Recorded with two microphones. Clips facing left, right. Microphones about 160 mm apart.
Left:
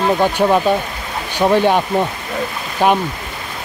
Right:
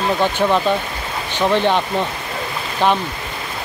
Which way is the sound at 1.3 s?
10° left (ahead or behind).